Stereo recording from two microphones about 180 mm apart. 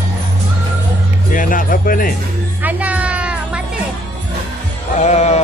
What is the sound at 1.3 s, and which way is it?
Speech, 50° left (ahead or behind).